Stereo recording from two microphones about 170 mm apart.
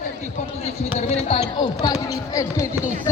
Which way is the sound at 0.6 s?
40° left (ahead or behind).